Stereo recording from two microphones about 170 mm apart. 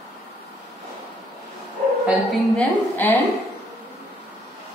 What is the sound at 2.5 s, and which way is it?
Speech, 10° left (ahead or behind).